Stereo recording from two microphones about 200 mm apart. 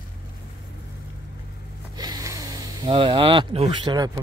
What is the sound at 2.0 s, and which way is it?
Speech, 20° right (ahead or behind).